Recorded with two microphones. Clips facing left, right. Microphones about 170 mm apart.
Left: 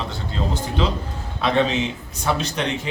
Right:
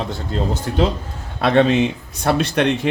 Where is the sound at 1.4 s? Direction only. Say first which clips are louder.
Right 5 dB; 60° right (ahead or behind).